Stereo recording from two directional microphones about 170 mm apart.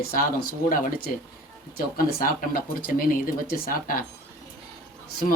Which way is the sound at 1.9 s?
55° left (ahead or behind).